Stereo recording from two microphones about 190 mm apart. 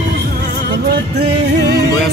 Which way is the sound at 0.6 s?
60° right (ahead or behind).